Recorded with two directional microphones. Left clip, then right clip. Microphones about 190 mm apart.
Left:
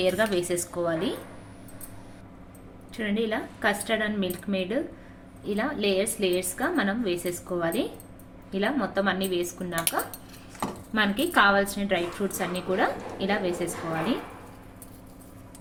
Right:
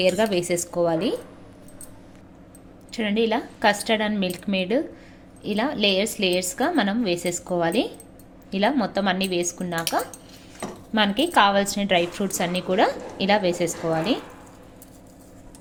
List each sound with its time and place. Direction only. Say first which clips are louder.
0.0 s a woman's voice: right 4 dB; 40° right (ahead or behind)
2.9 s a woman's voice: right 6 dB; 40° right (ahead or behind)
10.9 s a woman's voice: right 4 dB; 30° right (ahead or behind)